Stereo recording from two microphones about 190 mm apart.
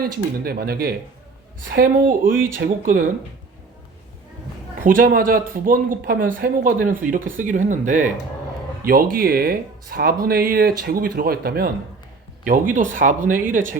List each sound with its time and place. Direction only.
0.0 s speech: 50° right (ahead or behind)
4.8 s speech: 45° right (ahead or behind)